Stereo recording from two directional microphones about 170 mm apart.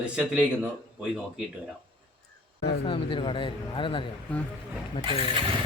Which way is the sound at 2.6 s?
80° left.